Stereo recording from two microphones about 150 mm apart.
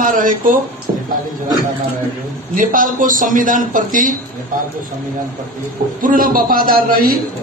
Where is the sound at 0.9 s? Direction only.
70° right (ahead or behind).